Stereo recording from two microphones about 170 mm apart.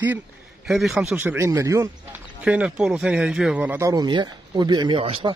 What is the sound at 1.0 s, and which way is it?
Speech, 10° right (ahead or behind).